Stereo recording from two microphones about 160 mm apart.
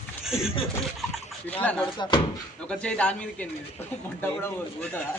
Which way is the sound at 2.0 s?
30° left (ahead or behind).